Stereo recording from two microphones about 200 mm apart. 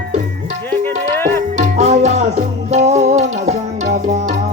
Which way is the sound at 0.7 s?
10° left (ahead or behind).